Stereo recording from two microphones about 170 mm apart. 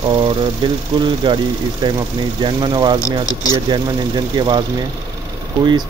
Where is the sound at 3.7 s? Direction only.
25° right (ahead or behind).